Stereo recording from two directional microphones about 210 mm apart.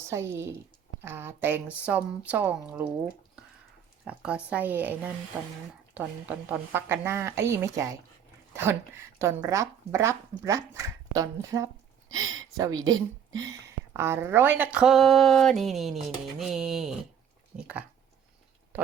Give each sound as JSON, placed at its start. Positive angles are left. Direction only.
{"t": 0.1, "sound": "speech", "side_deg": -10}
{"t": 4.0, "sound": "speech", "side_deg": -5}
{"t": 9.1, "sound": "speech", "side_deg": -15}
{"t": 17.5, "sound": "a sound", "side_deg": -5}